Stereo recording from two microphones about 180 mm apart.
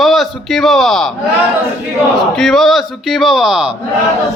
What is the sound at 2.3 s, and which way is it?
A man's voice, centre (ahead or behind).